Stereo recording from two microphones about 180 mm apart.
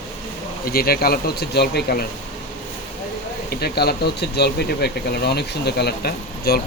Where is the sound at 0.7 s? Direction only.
55° left (ahead or behind).